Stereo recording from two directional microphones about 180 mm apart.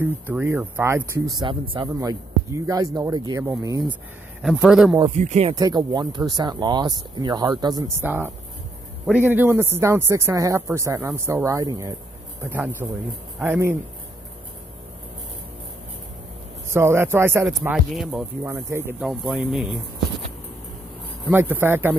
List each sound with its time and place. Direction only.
0.0 s speech: 10° right (ahead or behind)
4.4 s speech: 5° right (ahead or behind)
5.1 s speech: 40° right (ahead or behind)
5.5 s speech: 20° right (ahead or behind)
16.7 s speech: 15° right (ahead or behind)
17.5 s speech: centre (ahead or behind)
18.4 s speech: 15° right (ahead or behind)
21.3 s speech: 10° right (ahead or behind)